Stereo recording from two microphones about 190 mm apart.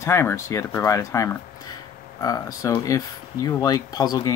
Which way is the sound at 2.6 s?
20° left (ahead or behind).